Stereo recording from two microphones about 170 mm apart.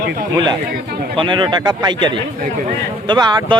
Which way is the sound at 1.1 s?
30° right (ahead or behind).